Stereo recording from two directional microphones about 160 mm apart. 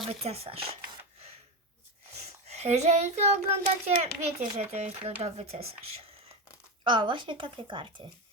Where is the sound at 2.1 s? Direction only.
45° right (ahead or behind).